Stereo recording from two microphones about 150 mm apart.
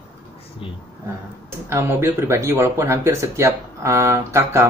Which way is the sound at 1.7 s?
15° right (ahead or behind).